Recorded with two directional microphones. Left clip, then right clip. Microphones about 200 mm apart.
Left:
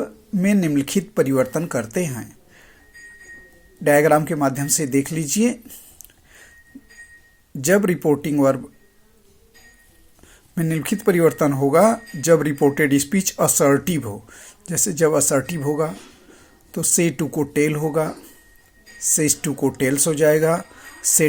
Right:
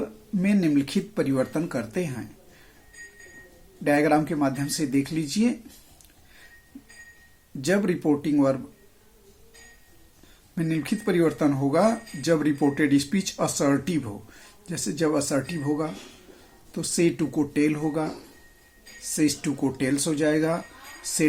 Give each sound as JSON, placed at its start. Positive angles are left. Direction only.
{"t": 0.3, "sound": "speech", "side_deg": 30}
{"t": 3.8, "sound": "speech", "side_deg": 35}
{"t": 7.6, "sound": "speech", "side_deg": 35}
{"t": 10.5, "sound": "a woman's voice", "side_deg": 35}